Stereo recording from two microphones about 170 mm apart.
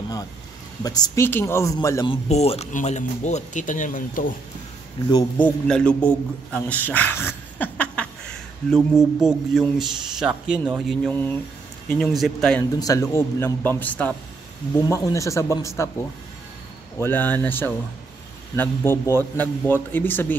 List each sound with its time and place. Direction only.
0.8 s a man's voice: 20° left (ahead or behind)
2.0 s speech: 40° left (ahead or behind)
5.4 s a man's voice: 5° left (ahead or behind)
8.6 s mantra: centre (ahead or behind)
11.1 s a man's voice: 10° left (ahead or behind)
11.9 s mantra: centre (ahead or behind)
12.7 s a man's voice: 20° left (ahead or behind)
17.0 s a man's voice: 10° left (ahead or behind)